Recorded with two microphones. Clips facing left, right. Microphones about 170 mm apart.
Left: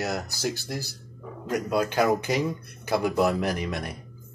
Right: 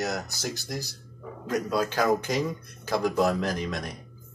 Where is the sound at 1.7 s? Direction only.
55° left (ahead or behind).